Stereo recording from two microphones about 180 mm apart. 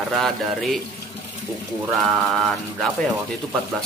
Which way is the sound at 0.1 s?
Centre (ahead or behind).